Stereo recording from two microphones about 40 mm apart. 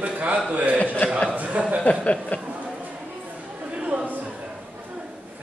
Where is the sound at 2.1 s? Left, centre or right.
Left.